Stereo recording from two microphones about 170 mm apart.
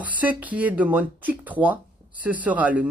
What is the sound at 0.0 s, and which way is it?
Speech, 10° right (ahead or behind).